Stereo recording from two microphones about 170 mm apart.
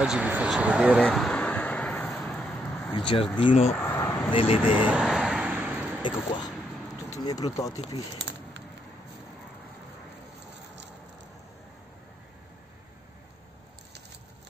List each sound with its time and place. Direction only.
0.0 s speech: 5° right (ahead or behind)
1.0 s vehicle: 5° left (ahead or behind)
2.9 s speech: 30° left (ahead or behind)
3.7 s vehicle: 10° left (ahead or behind)
4.3 s speech: 30° left (ahead or behind)
4.6 s vehicle: 5° right (ahead or behind)
6.0 s speech: 30° left (ahead or behind)